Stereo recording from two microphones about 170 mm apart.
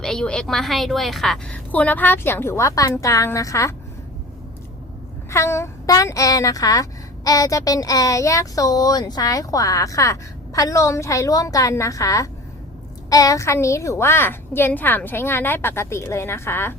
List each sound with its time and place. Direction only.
0.0 s a woman's voice: 5° left (ahead or behind)
5.3 s a woman's voice: 15° left (ahead or behind)